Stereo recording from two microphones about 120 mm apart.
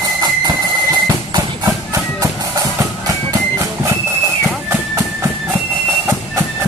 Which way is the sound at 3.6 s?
25° right (ahead or behind).